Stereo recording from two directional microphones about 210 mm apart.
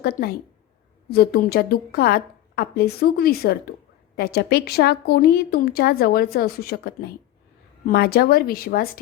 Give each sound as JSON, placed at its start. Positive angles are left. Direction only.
{"t": 0.0, "sound": "a woman's voice", "side_deg": 45}